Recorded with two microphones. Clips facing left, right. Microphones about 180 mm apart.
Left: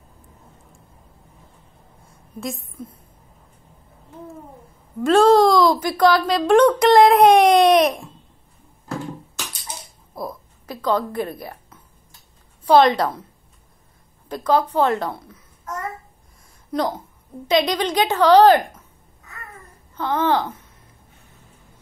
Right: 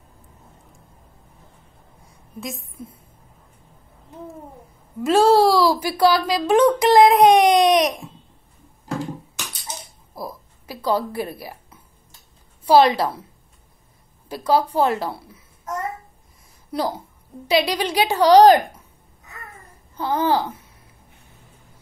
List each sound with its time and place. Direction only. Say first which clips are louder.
5.0 s speech: left 1 dB; 10° right (ahead or behind)
10.1 s a woman's voice: left 2 dB; 5° right (ahead or behind)
14.3 s a woman's voice: even; 10° right (ahead or behind)
16.7 s a woman's voice: left 2 dB; 10° right (ahead or behind)
20.0 s a woman's voice: even; 10° right (ahead or behind)